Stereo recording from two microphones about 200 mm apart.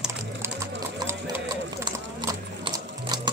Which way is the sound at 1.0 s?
15° right (ahead or behind).